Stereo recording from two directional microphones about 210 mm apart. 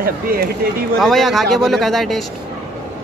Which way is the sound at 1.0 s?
Centre (ahead or behind).